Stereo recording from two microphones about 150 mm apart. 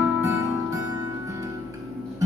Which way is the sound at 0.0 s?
20° right (ahead or behind).